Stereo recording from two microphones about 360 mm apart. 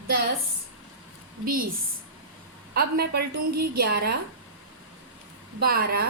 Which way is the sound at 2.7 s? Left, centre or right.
Right.